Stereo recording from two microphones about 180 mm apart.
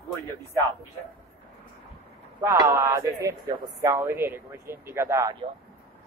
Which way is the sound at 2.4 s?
20° right (ahead or behind).